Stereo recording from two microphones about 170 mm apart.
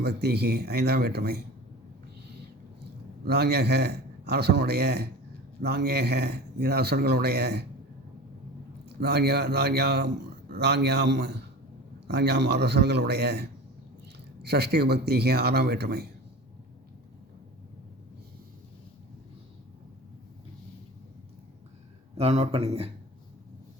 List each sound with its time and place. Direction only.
0.0 s speech: 70° right (ahead or behind)
3.2 s speech: 70° right (ahead or behind)
9.0 s speech: 70° right (ahead or behind)
22.2 s speech: 40° right (ahead or behind)